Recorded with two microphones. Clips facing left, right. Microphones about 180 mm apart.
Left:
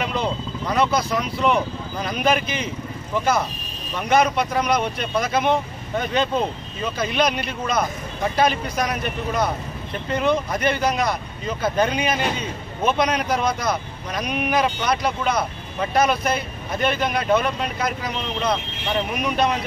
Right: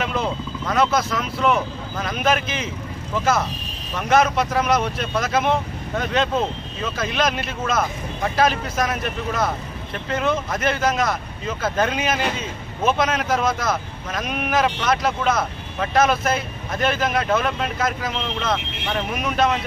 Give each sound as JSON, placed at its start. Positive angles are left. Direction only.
{"t": 0.0, "sound": "speech", "side_deg": 0}
{"t": 3.9, "sound": "speech", "side_deg": 0}